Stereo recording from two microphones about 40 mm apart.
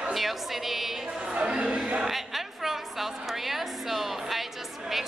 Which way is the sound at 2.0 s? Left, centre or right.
Centre.